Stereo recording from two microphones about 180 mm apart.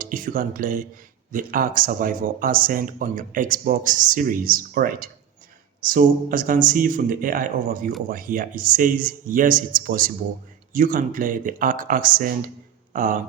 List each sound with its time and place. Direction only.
0.0 s speech: 50° right (ahead or behind)